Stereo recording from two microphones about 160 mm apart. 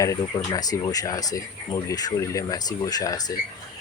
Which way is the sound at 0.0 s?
20° left (ahead or behind).